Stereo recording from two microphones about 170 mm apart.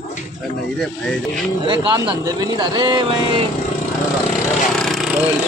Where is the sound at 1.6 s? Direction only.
30° right (ahead or behind).